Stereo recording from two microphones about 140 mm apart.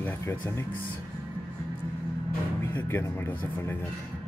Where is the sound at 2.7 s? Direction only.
15° left (ahead or behind).